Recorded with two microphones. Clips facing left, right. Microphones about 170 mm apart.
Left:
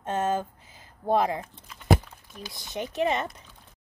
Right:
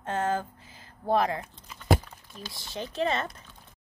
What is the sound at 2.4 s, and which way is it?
Speech, 20° left (ahead or behind).